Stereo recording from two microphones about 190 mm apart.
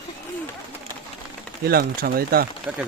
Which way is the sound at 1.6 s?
55° right (ahead or behind).